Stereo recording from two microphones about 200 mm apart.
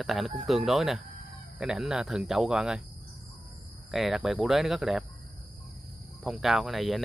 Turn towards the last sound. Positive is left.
turn(degrees=0)  # may be behind; listen again after turning